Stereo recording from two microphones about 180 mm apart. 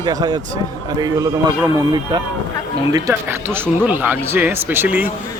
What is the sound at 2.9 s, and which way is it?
Speech, 10° right (ahead or behind).